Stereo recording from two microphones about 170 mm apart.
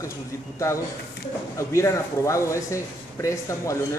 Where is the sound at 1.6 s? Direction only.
15° left (ahead or behind).